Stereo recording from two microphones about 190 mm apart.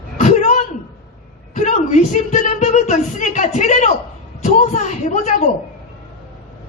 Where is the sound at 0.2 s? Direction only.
35° left (ahead or behind).